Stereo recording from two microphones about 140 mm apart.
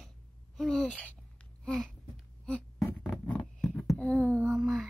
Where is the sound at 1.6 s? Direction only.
5° left (ahead or behind).